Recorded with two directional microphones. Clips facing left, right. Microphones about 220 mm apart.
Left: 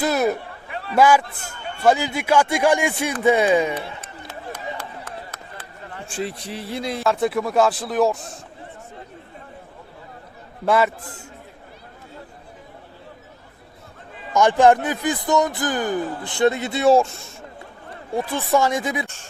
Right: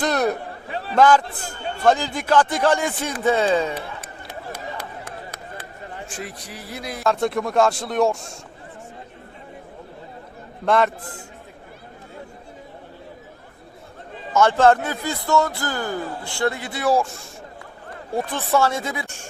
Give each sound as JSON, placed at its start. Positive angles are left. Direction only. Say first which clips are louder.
{"t": 0.0, "sound": "a sound", "louder": "left 1 dB", "side_deg": 5}
{"t": 0.7, "sound": "a sound", "louder": "right 2 dB", "side_deg": -30}
{"t": 0.9, "sound": "speech", "louder": "even", "side_deg": 10}
{"t": 1.2, "sound": "a man's voice", "louder": "right 4 dB", "side_deg": -30}
{"t": 1.8, "sound": "speech", "louder": "left 1 dB", "side_deg": 10}
{"t": 5.0, "sound": "chop", "louder": "right 1 dB", "side_deg": -15}
{"t": 6.1, "sound": "a sound", "louder": "left 6 dB", "side_deg": 30}
{"t": 7.0, "sound": "speech", "louder": "even", "side_deg": 0}
{"t": 10.7, "sound": "speech", "louder": "even", "side_deg": 5}
{"t": 14.3, "sound": "speech", "louder": "left 1 dB", "side_deg": 15}
{"t": 18.2, "sound": "speech", "louder": "left 1 dB", "side_deg": 10}
{"t": 19.0, "sound": "speech", "louder": "right 1 dB", "side_deg": -15}